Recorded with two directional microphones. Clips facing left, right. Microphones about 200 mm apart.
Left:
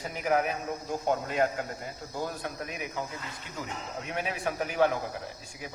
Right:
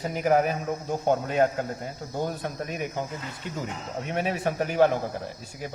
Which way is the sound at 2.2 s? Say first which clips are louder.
Right 5 dB; 30° right (ahead or behind).